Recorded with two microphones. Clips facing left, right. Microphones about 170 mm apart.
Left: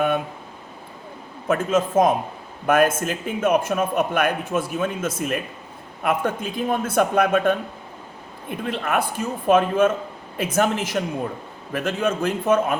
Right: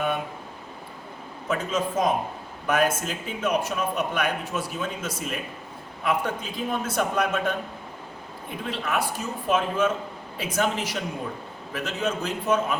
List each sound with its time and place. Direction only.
1.5 s a man's voice: 50° left (ahead or behind)
8.6 s a man's voice: 50° left (ahead or behind)